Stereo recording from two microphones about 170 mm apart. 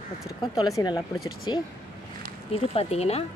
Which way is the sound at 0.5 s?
20° left (ahead or behind).